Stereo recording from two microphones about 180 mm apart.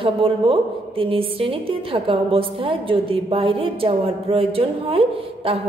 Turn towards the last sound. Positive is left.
turn(degrees=-30)  # may be behind; listen again after turning